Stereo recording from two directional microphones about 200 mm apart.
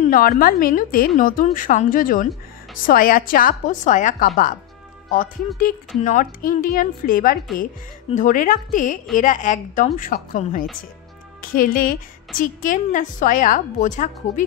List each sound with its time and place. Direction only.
0.0 s a woman's voice: 40° left (ahead or behind)
6.0 s a woman's voice: 45° left (ahead or behind)